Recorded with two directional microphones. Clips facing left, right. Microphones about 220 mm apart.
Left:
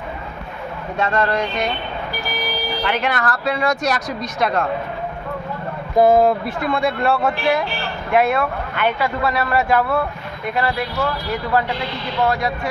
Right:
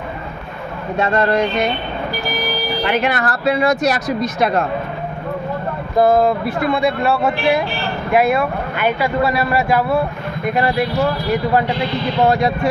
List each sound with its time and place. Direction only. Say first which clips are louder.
0.9 s a man's voice: right 4 dB; 10° right (ahead or behind)
2.8 s a man's voice: right 4 dB; 10° right (ahead or behind)
5.9 s speech: even; 10° left (ahead or behind)
6.4 s a man's voice: right 3 dB; 5° right (ahead or behind); by 12.5 s 25° right (ahead or behind)